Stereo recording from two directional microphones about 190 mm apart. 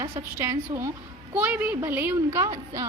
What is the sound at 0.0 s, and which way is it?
A woman's voice, 15° right (ahead or behind).